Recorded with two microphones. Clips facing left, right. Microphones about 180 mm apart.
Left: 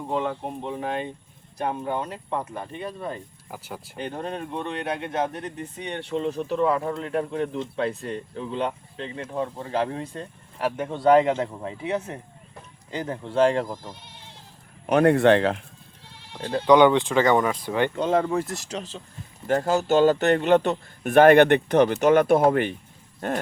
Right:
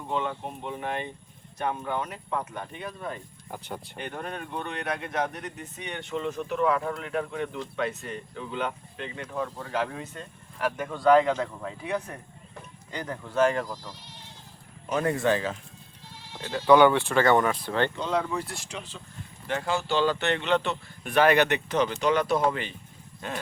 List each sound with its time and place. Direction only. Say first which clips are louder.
0.1 s speech: left 3 dB; 35° left (ahead or behind)
3.5 s speech: even; 5° left (ahead or behind)
3.9 s speech: left 6 dB; 30° left (ahead or behind)
13.9 s speech: left 2 dB; 55° left (ahead or behind)
14.8 s speech: left 8 dB; 65° left (ahead or behind)
16.6 s speech: left 2 dB; 20° left (ahead or behind)
17.9 s a man's voice: left 6 dB; 50° left (ahead or behind)